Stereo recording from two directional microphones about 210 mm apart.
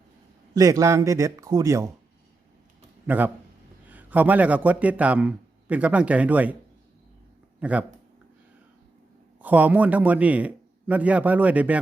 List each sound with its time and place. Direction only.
0.5 s a man's voice: 15° right (ahead or behind)
3.1 s a man's voice: 10° right (ahead or behind)
7.6 s a man's voice: 5° right (ahead or behind)
9.4 s a man's voice: 5° right (ahead or behind)